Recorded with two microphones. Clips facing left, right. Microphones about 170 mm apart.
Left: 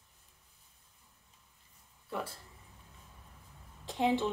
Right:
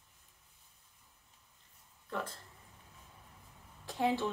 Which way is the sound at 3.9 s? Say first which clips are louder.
Left 2 dB; 20° left (ahead or behind).